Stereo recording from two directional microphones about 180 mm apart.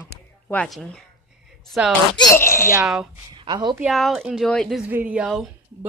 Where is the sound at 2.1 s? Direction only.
20° left (ahead or behind).